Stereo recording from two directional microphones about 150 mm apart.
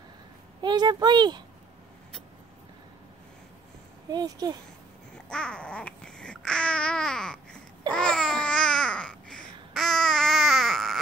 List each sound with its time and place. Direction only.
0.6 s speech: 30° right (ahead or behind)
4.1 s speech: 25° right (ahead or behind)
5.1 s babbling: 5° left (ahead or behind)